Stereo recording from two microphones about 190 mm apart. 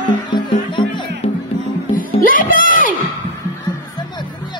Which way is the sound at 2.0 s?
45° left (ahead or behind).